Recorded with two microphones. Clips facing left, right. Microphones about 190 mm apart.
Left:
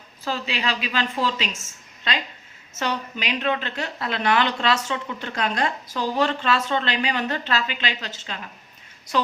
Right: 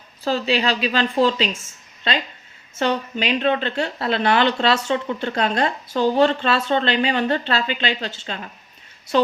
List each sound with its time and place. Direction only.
0.3 s a woman's voice: 30° right (ahead or behind)
9.1 s a woman's voice: 30° right (ahead or behind)